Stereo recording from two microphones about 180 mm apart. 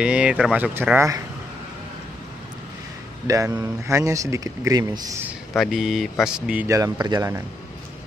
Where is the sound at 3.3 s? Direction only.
15° right (ahead or behind).